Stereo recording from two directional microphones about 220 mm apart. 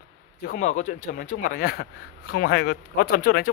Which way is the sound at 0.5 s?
35° left (ahead or behind).